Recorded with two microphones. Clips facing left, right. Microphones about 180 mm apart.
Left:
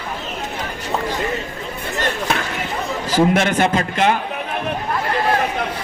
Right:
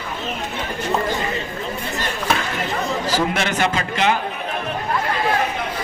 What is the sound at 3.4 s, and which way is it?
Speech, 50° left (ahead or behind).